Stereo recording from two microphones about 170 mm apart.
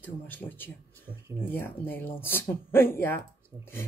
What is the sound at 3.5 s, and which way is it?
Speech, 20° right (ahead or behind).